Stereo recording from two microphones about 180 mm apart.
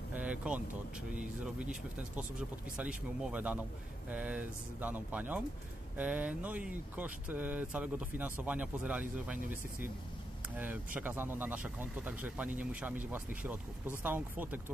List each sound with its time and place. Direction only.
0.1 s vehicle: 5° right (ahead or behind)
1.1 s speech: 5° right (ahead or behind)